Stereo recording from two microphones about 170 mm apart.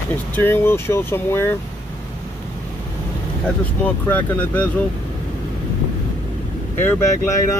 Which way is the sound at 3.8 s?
10° left (ahead or behind).